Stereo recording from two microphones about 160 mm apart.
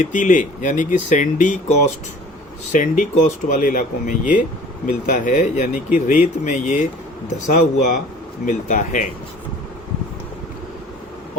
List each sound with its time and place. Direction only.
0.0 s speech: 55° left (ahead or behind)
2.7 s speech: 50° left (ahead or behind)